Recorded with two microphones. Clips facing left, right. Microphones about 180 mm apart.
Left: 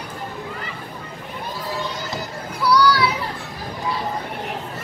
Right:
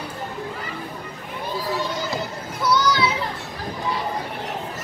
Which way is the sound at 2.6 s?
20° right (ahead or behind).